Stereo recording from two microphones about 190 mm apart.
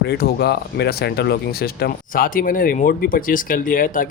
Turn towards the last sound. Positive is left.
turn(degrees=45)  # may be behind; listen again after turning